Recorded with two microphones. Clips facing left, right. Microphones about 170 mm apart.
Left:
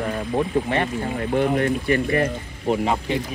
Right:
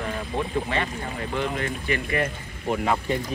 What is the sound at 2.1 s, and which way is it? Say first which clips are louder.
Speech: left 5 dB; 35° left (ahead or behind).